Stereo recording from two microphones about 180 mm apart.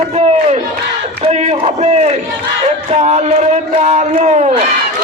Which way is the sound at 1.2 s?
40° right (ahead or behind).